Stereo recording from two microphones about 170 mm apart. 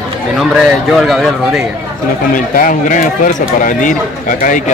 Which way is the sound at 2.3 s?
55° left (ahead or behind).